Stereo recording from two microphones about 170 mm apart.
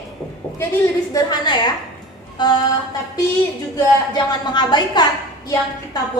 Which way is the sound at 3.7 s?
25° left (ahead or behind).